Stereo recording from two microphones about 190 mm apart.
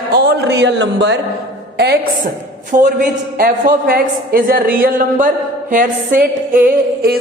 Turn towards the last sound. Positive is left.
turn(degrees=-50)  # may be behind; listen again after turning